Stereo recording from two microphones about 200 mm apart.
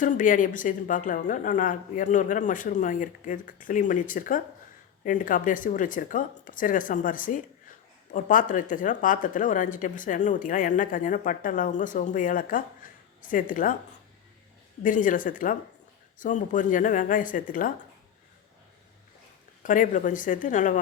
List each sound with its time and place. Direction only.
0.0 s speech: 40° left (ahead or behind)
14.8 s speech: 40° left (ahead or behind)
19.6 s speech: 40° left (ahead or behind)